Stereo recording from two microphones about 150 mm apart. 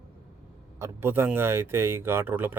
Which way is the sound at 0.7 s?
15° right (ahead or behind).